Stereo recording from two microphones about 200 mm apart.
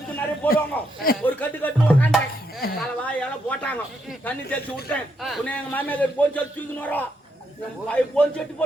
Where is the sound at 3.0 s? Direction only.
5° left (ahead or behind).